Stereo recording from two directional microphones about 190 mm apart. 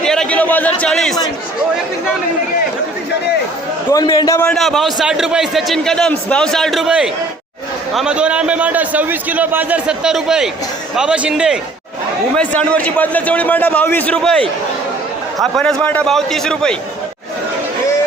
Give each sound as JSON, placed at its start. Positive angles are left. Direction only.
{"t": 0.0, "sound": "a man's voice", "side_deg": 5}
{"t": 3.8, "sound": "a man's voice", "side_deg": 15}
{"t": 4.4, "sound": "a man's voice", "side_deg": 0}
{"t": 12.4, "sound": "a man's voice", "side_deg": 5}